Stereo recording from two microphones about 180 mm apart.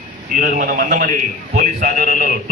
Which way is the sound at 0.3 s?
50° right (ahead or behind).